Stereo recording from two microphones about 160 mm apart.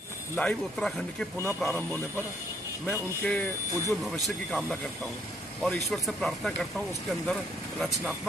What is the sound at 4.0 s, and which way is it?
Speech, centre (ahead or behind).